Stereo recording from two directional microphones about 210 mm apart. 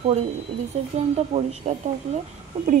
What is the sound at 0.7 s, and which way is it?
Speech, 30° right (ahead or behind).